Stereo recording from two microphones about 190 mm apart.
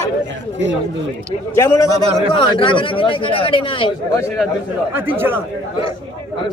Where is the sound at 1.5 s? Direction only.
15° left (ahead or behind).